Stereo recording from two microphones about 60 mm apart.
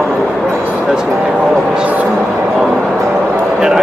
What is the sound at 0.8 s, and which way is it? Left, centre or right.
Speech, centre.